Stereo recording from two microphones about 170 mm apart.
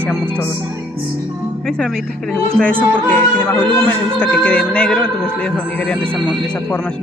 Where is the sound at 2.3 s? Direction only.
5° left (ahead or behind).